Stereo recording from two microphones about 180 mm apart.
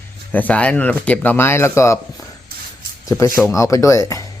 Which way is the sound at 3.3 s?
15° left (ahead or behind).